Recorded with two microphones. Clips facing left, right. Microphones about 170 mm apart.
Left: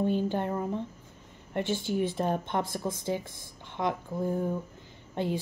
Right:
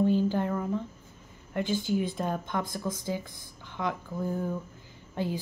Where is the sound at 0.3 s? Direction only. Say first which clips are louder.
Right 1 dB; 25° left (ahead or behind).